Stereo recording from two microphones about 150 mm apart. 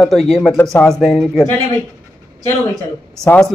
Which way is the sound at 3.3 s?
5° left (ahead or behind).